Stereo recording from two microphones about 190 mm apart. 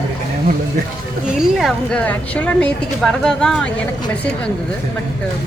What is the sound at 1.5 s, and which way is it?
A woman's voice, centre (ahead or behind).